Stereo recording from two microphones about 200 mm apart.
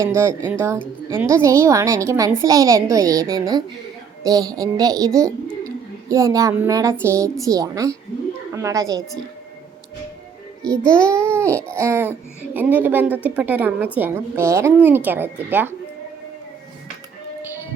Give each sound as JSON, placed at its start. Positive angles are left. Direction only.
{"t": 0.0, "sound": "a woman's voice", "side_deg": -15}
{"t": 10.6, "sound": "a child's voice", "side_deg": 5}
{"t": 11.1, "sound": "a woman's voice", "side_deg": -15}